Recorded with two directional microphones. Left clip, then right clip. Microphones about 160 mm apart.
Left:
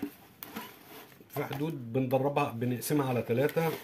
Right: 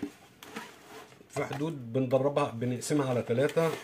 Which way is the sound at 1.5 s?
15° left (ahead or behind).